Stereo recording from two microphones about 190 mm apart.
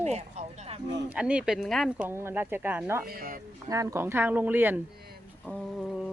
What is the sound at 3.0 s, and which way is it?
Speech, 50° right (ahead or behind).